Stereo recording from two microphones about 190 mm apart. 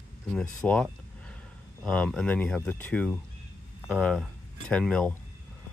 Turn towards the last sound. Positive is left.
turn(degrees=5)  # may be behind; listen again after turning